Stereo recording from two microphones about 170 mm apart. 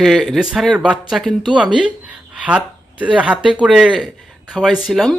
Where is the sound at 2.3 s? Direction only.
5° right (ahead or behind).